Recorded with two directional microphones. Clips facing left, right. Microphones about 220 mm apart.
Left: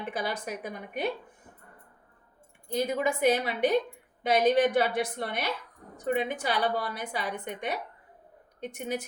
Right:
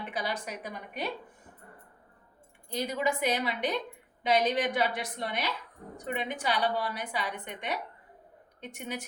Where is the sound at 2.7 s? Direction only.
55° left (ahead or behind).